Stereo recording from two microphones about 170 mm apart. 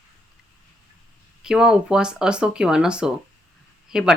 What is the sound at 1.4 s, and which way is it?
Speech, 5° right (ahead or behind).